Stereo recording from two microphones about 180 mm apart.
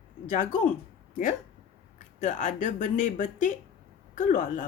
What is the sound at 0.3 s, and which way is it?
Speech, 45° left (ahead or behind).